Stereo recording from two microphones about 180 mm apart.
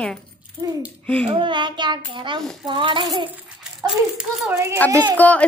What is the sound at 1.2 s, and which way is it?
A child's voice, 30° right (ahead or behind).